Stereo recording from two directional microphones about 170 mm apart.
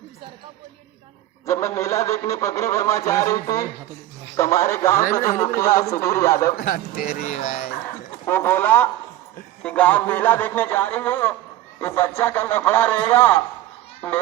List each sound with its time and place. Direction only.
1.5 s a man's voice: 15° left (ahead or behind)
6.6 s speech: 60° left (ahead or behind)
7.2 s speech: 45° left (ahead or behind)
7.9 s a man's voice: 15° left (ahead or behind)